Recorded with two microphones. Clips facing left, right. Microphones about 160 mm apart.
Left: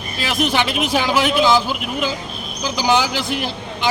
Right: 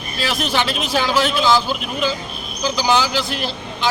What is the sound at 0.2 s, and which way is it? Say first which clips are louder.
A man's voice: left 2 dB; 15° left (ahead or behind).